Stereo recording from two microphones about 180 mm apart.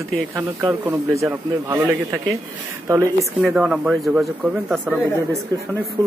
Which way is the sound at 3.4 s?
5° right (ahead or behind).